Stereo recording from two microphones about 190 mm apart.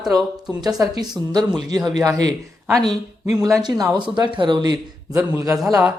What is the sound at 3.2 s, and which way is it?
A man's voice, 15° right (ahead or behind).